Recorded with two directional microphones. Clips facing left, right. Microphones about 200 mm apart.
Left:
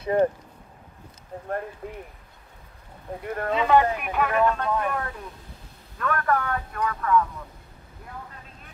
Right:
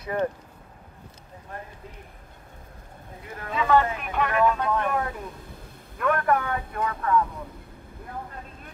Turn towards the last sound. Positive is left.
turn(degrees=-30)  # may be behind; listen again after turning